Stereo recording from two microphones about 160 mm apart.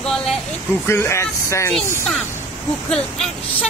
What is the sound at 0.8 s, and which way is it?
Speech, 15° left (ahead or behind).